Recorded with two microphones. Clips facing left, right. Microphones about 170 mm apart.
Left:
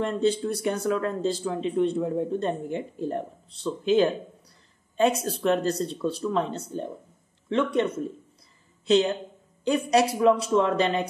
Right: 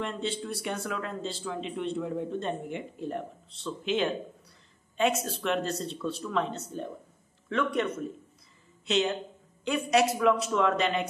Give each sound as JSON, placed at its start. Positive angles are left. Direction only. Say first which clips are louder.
{"t": 0.0, "sound": "a woman's voice", "louder": "left 9 dB", "side_deg": 40}